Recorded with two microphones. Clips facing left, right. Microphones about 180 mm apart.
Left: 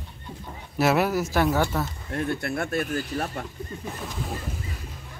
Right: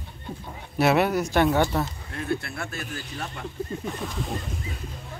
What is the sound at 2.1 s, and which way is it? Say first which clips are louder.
Speech: left 2 dB; 45° left (ahead or behind).